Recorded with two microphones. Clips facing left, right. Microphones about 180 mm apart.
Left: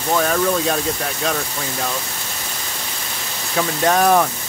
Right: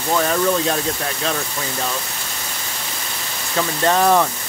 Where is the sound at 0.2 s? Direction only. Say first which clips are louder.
Right 1 dB; centre (ahead or behind).